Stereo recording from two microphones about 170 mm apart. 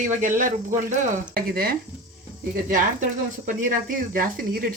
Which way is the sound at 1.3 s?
60° right (ahead or behind).